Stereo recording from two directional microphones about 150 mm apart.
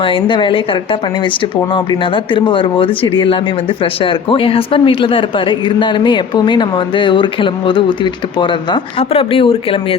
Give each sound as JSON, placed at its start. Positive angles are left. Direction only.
{"t": 0.0, "sound": "speech", "side_deg": 35}